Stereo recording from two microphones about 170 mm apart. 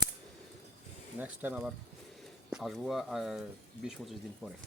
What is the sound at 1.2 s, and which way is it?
Speech, 10° right (ahead or behind).